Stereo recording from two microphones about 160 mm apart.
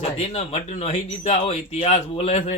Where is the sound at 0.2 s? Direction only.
40° left (ahead or behind).